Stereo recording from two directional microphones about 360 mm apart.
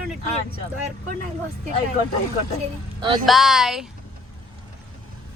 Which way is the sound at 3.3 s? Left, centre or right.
Centre.